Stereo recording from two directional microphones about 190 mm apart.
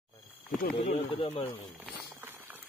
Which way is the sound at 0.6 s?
55° left (ahead or behind).